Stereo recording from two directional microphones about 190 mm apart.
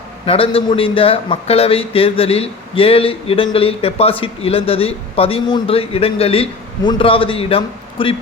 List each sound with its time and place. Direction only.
0.3 s a man's voice: 30° left (ahead or behind)